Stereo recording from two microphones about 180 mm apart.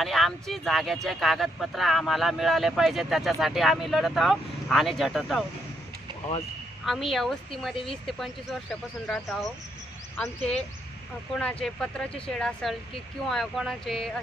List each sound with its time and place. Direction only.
0.0 s speech: centre (ahead or behind)
6.9 s speech: centre (ahead or behind)
7.7 s speech: 30° left (ahead or behind)
9.0 s speech: 5° left (ahead or behind)
11.3 s speech: 5° left (ahead or behind)